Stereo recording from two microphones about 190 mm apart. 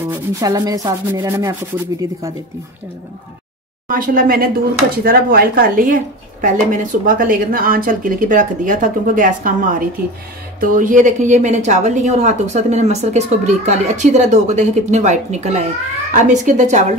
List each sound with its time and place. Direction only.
0.0 s sanding: 15° right (ahead or behind)
3.9 s a woman's voice: 45° right (ahead or behind)